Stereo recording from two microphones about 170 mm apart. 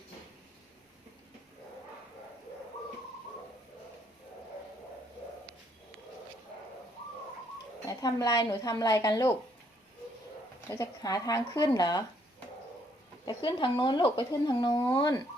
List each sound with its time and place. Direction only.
7.9 s speech: 20° left (ahead or behind)
10.7 s speech: 20° left (ahead or behind)
13.2 s speech: 30° left (ahead or behind)